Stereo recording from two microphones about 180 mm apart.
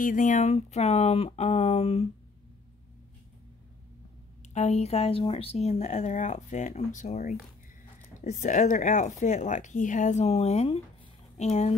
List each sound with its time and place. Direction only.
0.0 s speech: 45° left (ahead or behind)
4.6 s speech: 35° left (ahead or behind)